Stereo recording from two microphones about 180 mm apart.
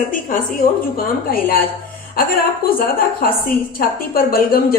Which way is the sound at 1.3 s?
55° left (ahead or behind).